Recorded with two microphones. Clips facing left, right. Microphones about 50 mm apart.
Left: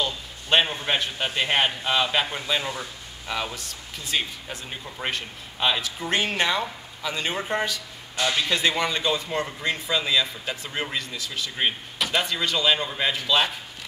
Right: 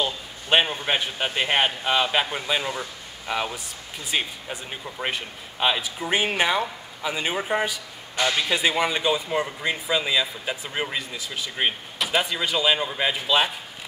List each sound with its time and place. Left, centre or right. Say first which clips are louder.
0.0 s a man's voice: right 1 dB; centre